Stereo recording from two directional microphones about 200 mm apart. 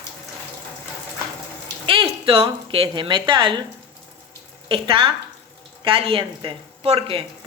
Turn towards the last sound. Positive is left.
turn(degrees=-30)  # may be behind; listen again after turning